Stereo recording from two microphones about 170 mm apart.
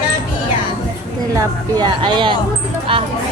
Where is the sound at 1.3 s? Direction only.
25° right (ahead or behind).